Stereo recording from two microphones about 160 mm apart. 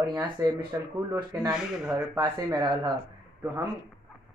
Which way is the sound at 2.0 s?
20° right (ahead or behind).